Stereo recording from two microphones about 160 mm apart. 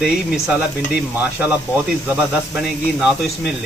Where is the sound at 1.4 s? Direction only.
5° right (ahead or behind).